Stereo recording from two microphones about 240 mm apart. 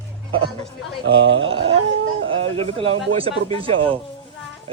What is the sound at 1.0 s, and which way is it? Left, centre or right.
Speech, right.